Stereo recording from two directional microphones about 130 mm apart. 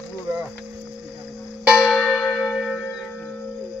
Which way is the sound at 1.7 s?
5° right (ahead or behind).